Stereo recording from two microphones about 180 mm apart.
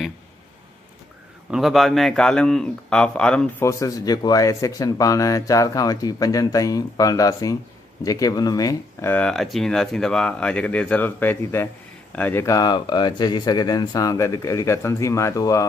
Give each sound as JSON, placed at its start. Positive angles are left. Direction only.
{"t": 1.5, "sound": "a man's voice", "side_deg": 0}
{"t": 3.6, "sound": "speech", "side_deg": 20}
{"t": 9.1, "sound": "speech", "side_deg": 5}